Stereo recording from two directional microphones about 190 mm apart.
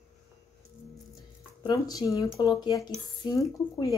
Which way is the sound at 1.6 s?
20° left (ahead or behind).